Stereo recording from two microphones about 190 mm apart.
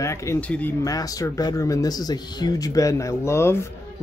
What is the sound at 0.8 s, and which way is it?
Speech, 20° left (ahead or behind).